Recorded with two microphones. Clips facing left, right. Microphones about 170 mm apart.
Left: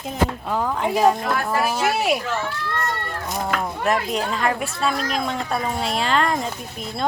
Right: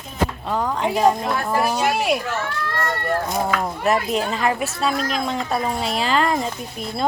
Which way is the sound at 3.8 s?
5° right (ahead or behind).